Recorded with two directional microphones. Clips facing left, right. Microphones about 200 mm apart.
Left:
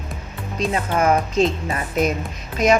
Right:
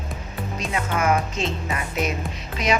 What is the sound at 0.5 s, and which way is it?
Speech, 35° left (ahead or behind).